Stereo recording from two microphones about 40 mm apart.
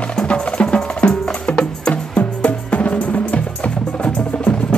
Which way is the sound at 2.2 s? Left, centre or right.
Left.